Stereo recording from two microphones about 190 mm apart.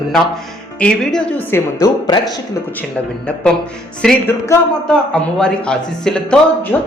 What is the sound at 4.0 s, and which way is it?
A woman's voice, 5° left (ahead or behind).